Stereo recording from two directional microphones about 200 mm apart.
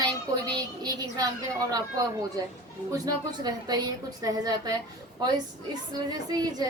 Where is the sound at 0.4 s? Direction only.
20° right (ahead or behind).